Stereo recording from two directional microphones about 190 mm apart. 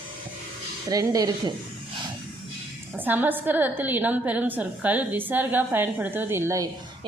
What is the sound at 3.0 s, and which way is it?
A woman's voice, 10° right (ahead or behind).